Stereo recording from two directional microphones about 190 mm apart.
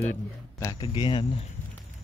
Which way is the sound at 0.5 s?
20° left (ahead or behind).